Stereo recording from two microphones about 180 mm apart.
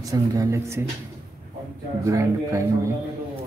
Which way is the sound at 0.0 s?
20° right (ahead or behind).